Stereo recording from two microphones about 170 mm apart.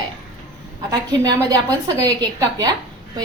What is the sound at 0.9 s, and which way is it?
A woman's voice, 20° right (ahead or behind).